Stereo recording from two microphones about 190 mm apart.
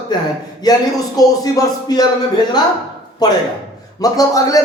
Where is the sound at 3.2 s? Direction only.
20° left (ahead or behind).